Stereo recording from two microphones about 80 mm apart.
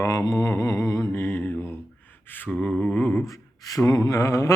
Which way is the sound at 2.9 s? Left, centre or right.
Centre.